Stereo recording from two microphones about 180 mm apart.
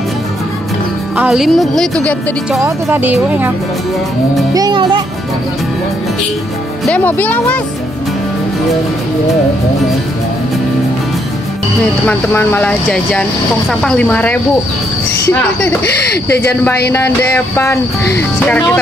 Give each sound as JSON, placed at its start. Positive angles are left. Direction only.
{"t": 1.1, "sound": "speech", "side_deg": -5}
{"t": 2.6, "sound": "speech", "side_deg": -10}
{"t": 4.6, "sound": "speech", "side_deg": -25}
{"t": 6.9, "sound": "speech", "side_deg": 10}
{"t": 12.1, "sound": "speech", "side_deg": 10}
{"t": 15.8, "sound": "speech", "side_deg": 65}
{"t": 16.9, "sound": "speech", "side_deg": 15}